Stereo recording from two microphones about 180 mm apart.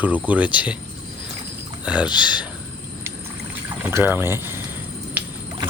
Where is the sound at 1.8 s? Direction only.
5° right (ahead or behind).